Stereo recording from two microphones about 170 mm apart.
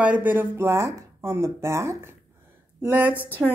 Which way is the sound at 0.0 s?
10° right (ahead or behind).